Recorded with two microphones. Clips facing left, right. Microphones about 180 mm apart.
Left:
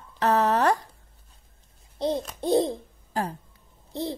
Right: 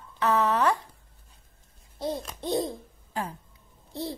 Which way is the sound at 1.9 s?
20° left (ahead or behind).